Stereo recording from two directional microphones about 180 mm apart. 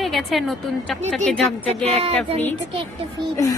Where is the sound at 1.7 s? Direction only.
35° right (ahead or behind).